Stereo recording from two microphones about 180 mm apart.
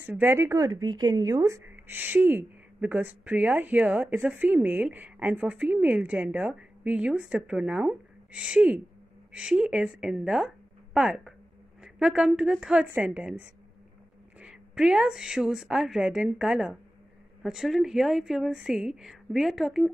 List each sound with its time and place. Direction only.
0.0 s a woman's voice: 10° right (ahead or behind)